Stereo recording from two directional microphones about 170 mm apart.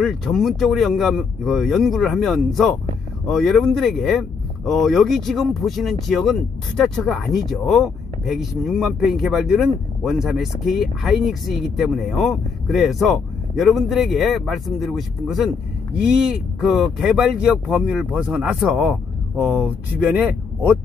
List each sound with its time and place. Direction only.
0.0 s speech: centre (ahead or behind)
20.0 s speech: 10° right (ahead or behind)